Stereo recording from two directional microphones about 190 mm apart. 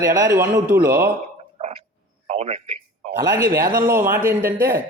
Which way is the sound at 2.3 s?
30° right (ahead or behind).